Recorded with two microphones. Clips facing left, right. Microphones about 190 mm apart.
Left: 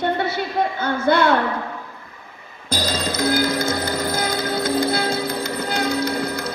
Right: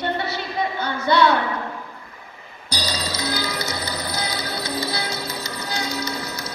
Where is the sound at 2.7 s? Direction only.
50° left (ahead or behind).